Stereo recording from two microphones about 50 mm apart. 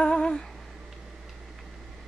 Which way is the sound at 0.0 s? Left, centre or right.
Centre.